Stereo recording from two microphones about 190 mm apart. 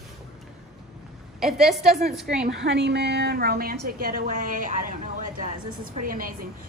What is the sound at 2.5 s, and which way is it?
A woman's voice, 70° right (ahead or behind).